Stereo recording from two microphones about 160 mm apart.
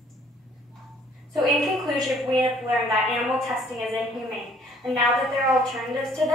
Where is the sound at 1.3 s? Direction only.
Centre (ahead or behind).